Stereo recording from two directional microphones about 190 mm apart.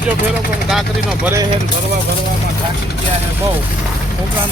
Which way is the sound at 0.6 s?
5° right (ahead or behind).